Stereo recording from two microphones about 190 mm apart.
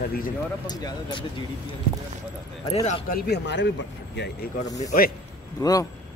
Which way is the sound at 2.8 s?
55° left (ahead or behind).